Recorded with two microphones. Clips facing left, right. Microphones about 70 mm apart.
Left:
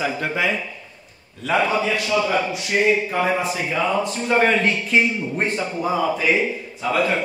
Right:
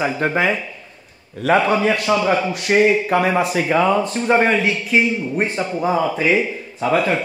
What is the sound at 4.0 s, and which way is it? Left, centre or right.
Speech, right.